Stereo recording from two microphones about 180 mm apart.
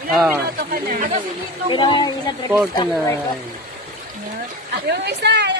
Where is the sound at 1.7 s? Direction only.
25° left (ahead or behind).